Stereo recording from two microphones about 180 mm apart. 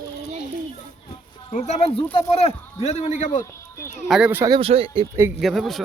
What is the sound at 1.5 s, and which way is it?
Speech, 40° left (ahead or behind).